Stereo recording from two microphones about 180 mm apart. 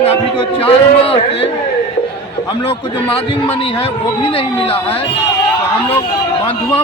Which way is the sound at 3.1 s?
30° left (ahead or behind).